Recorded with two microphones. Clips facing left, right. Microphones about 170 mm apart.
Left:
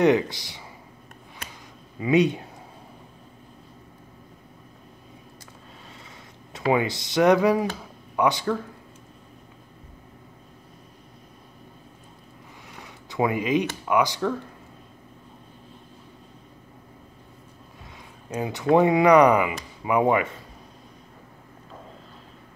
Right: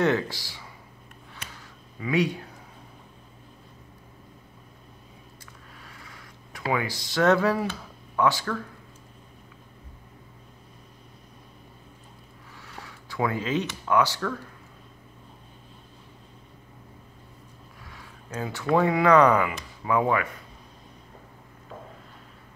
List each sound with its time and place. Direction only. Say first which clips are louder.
0.0 s speech: left 4 dB; 20° left (ahead or behind)
2.0 s speech: left 5 dB; 20° left (ahead or behind)
5.9 s a sound: left 2 dB; 25° left (ahead or behind)
8.2 s speech: left 2 dB; 20° left (ahead or behind)
12.6 s a sound: right 1 dB; 20° left (ahead or behind)
13.8 s speech: right 2 dB; 15° left (ahead or behind)
17.8 s speech: left 3 dB; 20° left (ahead or behind)